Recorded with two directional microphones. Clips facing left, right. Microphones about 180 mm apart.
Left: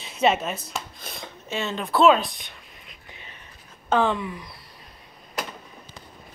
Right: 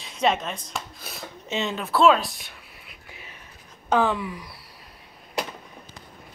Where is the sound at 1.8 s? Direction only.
Centre (ahead or behind).